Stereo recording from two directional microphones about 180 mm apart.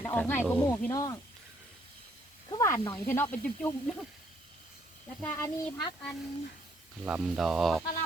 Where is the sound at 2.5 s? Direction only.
15° left (ahead or behind).